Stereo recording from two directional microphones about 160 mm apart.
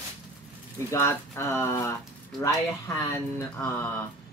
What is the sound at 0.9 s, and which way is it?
Speech, 15° left (ahead or behind).